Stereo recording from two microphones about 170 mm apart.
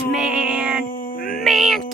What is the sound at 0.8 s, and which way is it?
Music, 55° left (ahead or behind).